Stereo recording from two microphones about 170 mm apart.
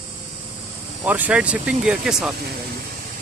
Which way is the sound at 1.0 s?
10° right (ahead or behind).